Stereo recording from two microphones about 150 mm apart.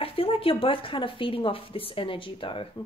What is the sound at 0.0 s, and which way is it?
A woman's voice, 40° left (ahead or behind).